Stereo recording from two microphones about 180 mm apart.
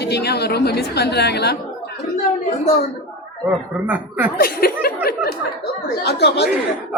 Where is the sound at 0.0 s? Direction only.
65° left (ahead or behind).